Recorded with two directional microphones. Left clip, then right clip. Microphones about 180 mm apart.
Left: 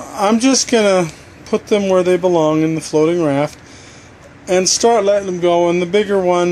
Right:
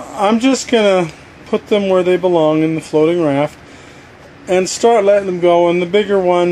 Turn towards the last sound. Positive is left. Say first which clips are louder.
# right 1 dB
turn(degrees=5)  # may be behind; listen again after turning